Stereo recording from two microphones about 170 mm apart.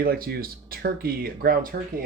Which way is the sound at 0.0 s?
60° right (ahead or behind).